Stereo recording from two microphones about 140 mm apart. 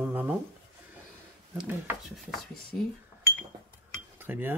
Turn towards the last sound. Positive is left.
turn(degrees=-15)  # may be behind; listen again after turning